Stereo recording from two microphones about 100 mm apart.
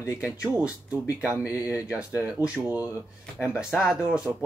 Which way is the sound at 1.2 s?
10° right (ahead or behind).